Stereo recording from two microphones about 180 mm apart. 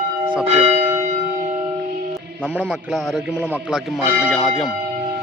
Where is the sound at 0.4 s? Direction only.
35° right (ahead or behind).